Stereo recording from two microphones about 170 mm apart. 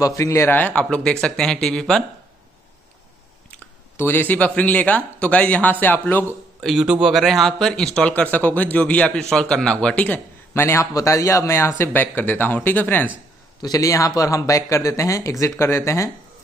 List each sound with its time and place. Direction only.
0.0 s a man's voice: 20° left (ahead or behind); by 2.0 s centre (ahead or behind)
3.4 s speech: 15° left (ahead or behind)
6.6 s a man's voice: centre (ahead or behind); by 16.1 s 15° left (ahead or behind)